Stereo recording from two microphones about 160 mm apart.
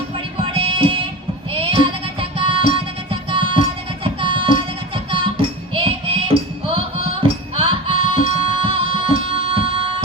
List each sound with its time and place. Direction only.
0.5 s music: 35° right (ahead or behind)
1.6 s child singing: 35° right (ahead or behind)
2.4 s music: 35° right (ahead or behind)
4.0 s child singing: 35° right (ahead or behind)
5.1 s music: 35° right (ahead or behind)